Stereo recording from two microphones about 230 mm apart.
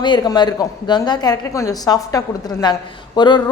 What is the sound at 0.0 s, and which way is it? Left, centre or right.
A woman's voice, centre.